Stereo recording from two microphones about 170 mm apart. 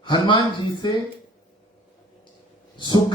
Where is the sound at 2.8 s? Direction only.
25° left (ahead or behind).